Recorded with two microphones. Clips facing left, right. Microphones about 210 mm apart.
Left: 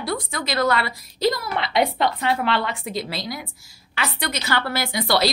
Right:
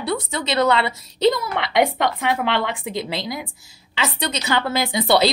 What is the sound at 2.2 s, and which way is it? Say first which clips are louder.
A woman's voice: right 1 dB; 15° right (ahead or behind).